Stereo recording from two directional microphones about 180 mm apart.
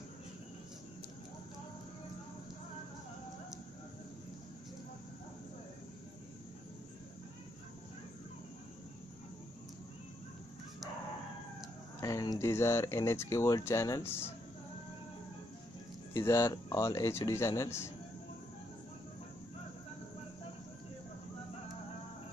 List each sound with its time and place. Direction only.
12.0 s speech: 20° left (ahead or behind)
16.1 s speech: 15° left (ahead or behind)